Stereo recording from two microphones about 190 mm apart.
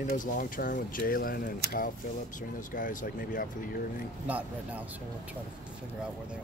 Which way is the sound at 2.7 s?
45° left (ahead or behind).